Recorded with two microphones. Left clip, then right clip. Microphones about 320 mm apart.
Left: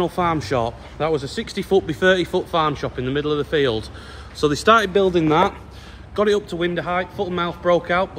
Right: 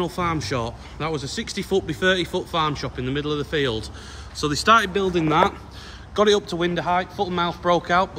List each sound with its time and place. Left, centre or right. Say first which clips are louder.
0.0 s a man's voice: left 4 dB; centre